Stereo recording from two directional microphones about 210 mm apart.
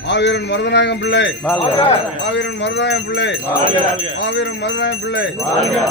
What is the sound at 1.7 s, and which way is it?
Speech, 25° left (ahead or behind).